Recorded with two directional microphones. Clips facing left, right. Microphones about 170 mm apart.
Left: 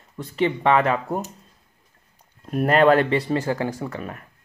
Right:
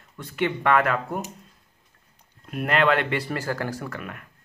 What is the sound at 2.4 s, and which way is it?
Speech, 40° left (ahead or behind).